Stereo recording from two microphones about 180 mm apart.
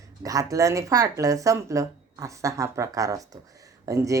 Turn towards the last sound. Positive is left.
turn(degrees=-20)  # may be behind; listen again after turning